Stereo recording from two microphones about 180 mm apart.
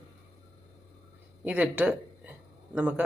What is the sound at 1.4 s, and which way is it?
Speech, 10° right (ahead or behind).